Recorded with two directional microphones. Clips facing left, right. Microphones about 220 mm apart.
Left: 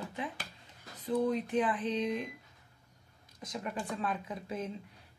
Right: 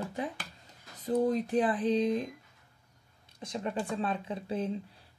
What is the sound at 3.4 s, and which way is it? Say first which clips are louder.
Speech: right 4 dB; 30° right (ahead or behind).